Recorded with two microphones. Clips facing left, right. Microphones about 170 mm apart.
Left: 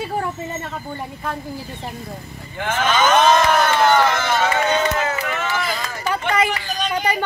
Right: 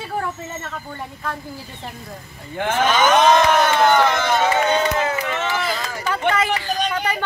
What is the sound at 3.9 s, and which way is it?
Speech, 15° right (ahead or behind).